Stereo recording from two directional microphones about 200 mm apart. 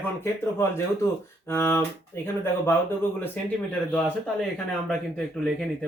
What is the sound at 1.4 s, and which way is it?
Speech, 10° left (ahead or behind).